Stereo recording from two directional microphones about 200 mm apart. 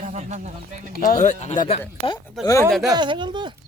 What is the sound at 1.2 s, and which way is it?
Speech, 35° left (ahead or behind).